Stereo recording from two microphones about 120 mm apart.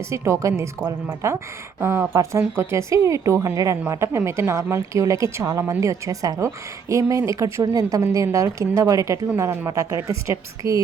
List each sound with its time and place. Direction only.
0.1 s a woman's voice: 25° right (ahead or behind)